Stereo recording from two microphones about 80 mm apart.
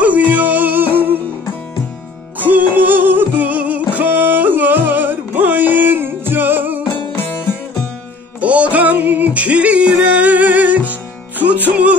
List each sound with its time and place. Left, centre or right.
0.0 s music: centre
2.3 s music: right
8.4 s music: centre